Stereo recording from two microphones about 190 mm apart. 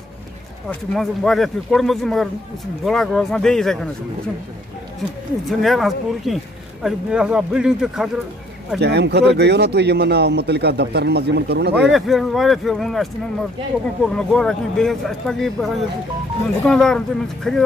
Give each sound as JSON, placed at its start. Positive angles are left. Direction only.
{"t": 0.7, "sound": "speech", "side_deg": 0}
{"t": 5.5, "sound": "speech", "side_deg": 0}
{"t": 8.7, "sound": "speech", "side_deg": -60}
{"t": 11.9, "sound": "speech", "side_deg": 0}